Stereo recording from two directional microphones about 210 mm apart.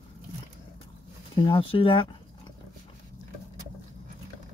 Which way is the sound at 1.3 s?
25° left (ahead or behind).